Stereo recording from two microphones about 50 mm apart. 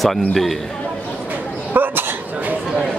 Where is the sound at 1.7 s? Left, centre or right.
Right.